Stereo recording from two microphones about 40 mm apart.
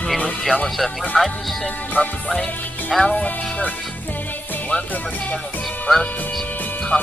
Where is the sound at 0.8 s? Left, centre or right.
Centre.